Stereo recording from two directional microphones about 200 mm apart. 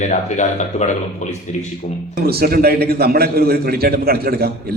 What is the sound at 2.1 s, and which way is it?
A man's voice, 50° right (ahead or behind).